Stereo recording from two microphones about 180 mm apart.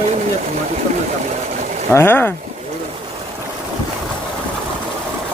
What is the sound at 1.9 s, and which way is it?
Speech, 10° left (ahead or behind).